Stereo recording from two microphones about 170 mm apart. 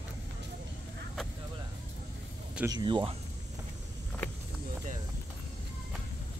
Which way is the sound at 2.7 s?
25° right (ahead or behind).